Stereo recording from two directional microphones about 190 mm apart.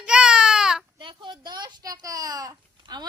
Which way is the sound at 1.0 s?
25° right (ahead or behind).